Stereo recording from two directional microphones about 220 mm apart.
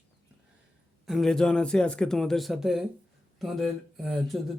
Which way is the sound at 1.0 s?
Centre (ahead or behind).